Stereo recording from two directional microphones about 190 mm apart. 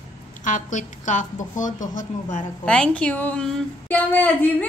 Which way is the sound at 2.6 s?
5° left (ahead or behind).